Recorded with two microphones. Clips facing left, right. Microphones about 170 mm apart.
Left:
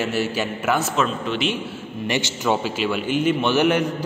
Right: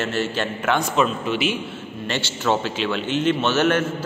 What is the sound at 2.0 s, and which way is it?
A man's voice, 15° left (ahead or behind).